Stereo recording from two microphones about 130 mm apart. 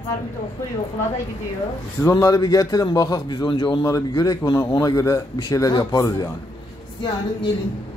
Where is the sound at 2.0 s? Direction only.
25° left (ahead or behind).